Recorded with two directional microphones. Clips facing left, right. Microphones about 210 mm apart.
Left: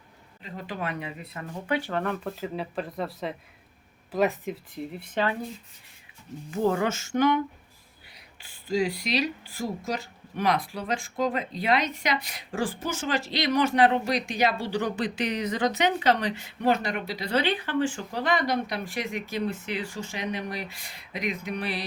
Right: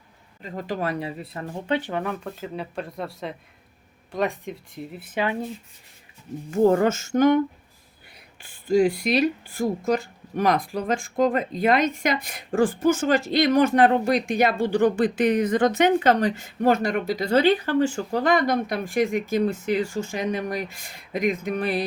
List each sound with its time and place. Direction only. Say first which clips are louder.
0.4 s speech: right 6 dB; 45° right (ahead or behind)
2.0 s speech: even; centre (ahead or behind)
6.5 s speech: right 7 dB; 45° right (ahead or behind)